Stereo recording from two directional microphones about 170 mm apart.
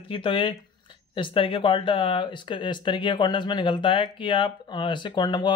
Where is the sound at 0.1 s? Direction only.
30° left (ahead or behind).